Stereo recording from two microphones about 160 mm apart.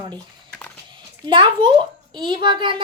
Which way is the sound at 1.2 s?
30° right (ahead or behind).